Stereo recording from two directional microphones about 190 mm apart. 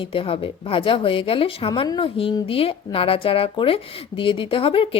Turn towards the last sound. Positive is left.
turn(degrees=30)  # may be behind; listen again after turning